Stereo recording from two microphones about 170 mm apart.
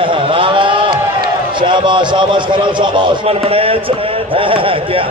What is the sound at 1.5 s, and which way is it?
A man's voice, 30° right (ahead or behind).